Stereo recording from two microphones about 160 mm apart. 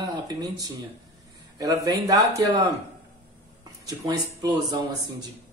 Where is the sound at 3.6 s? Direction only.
20° right (ahead or behind).